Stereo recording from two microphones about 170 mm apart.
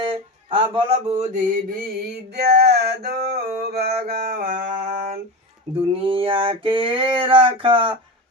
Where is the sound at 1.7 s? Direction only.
70° right (ahead or behind); by 5.1 s 45° right (ahead or behind).